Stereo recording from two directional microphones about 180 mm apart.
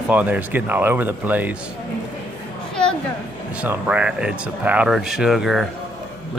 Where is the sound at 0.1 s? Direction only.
10° right (ahead or behind).